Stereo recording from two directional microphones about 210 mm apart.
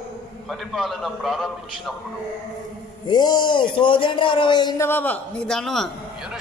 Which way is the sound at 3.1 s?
20° left (ahead or behind).